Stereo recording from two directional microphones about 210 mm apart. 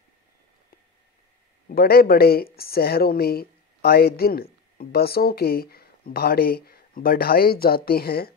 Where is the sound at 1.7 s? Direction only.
50° left (ahead or behind).